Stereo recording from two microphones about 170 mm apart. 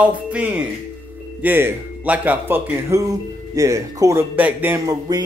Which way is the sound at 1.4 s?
10° right (ahead or behind).